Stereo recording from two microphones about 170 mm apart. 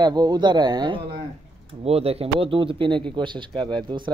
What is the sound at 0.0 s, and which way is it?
Speech, 25° right (ahead or behind).